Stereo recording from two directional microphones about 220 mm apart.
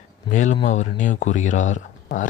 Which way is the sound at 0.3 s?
35° left (ahead or behind).